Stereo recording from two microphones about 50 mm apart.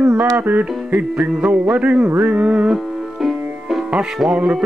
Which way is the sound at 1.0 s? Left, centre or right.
Right.